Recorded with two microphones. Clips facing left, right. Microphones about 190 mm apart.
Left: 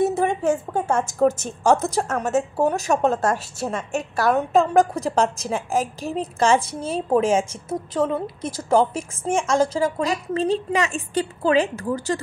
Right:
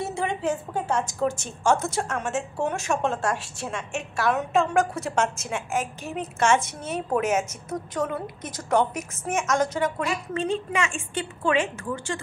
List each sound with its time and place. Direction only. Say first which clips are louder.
0.1 s a woman's voice: left 6 dB; 45° left (ahead or behind)